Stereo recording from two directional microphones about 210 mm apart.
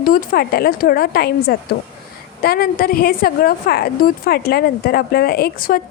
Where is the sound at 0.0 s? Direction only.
45° left (ahead or behind).